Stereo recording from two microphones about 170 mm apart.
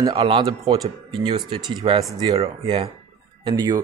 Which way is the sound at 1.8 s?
35° right (ahead or behind).